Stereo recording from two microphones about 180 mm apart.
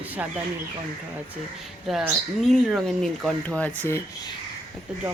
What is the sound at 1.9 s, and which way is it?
Speech, centre (ahead or behind).